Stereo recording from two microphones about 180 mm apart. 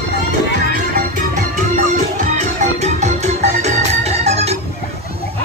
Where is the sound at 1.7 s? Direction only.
45° right (ahead or behind).